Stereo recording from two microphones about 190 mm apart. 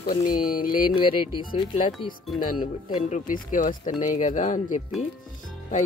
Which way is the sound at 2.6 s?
40° left (ahead or behind).